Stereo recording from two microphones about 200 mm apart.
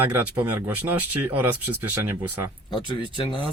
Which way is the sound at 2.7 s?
25° left (ahead or behind).